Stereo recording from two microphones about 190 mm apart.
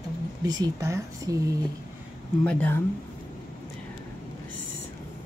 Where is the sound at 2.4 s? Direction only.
10° left (ahead or behind).